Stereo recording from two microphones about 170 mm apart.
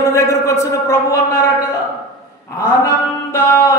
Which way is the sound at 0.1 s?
15° left (ahead or behind).